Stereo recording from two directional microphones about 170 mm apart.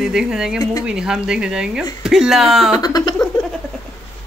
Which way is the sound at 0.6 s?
20° left (ahead or behind).